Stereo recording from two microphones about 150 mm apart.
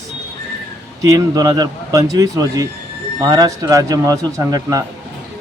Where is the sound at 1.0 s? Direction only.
25° right (ahead or behind).